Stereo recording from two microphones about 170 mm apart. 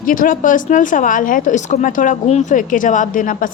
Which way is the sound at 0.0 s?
55° left (ahead or behind).